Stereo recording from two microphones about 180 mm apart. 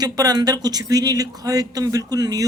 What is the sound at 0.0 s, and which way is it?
A woman's voice, 20° right (ahead or behind).